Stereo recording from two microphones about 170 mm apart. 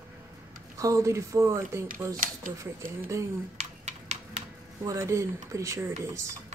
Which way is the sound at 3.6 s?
40° right (ahead or behind).